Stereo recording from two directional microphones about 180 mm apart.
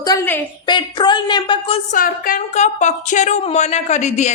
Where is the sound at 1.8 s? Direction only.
50° left (ahead or behind).